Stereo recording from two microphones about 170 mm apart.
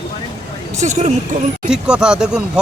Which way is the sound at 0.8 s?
40° right (ahead or behind).